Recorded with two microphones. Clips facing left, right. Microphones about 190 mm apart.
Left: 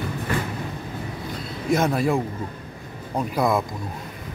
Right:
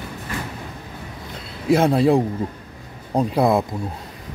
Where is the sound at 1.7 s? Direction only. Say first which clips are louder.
Right 5 dB; 30° right (ahead or behind).